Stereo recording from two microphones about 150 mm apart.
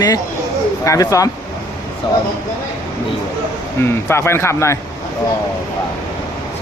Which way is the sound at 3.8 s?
15° left (ahead or behind).